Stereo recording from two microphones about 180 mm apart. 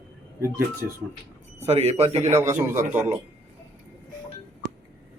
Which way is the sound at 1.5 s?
35° right (ahead or behind).